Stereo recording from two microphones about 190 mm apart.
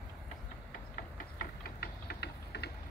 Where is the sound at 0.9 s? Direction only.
50° left (ahead or behind).